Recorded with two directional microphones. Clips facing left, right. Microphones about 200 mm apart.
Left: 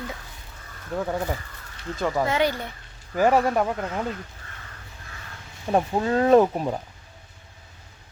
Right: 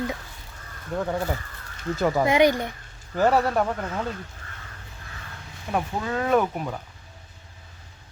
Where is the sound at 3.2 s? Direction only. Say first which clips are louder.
Left 1 dB; 15° left (ahead or behind).